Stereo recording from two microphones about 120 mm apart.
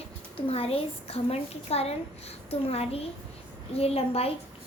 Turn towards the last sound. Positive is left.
turn(degrees=55)  # may be behind; listen again after turning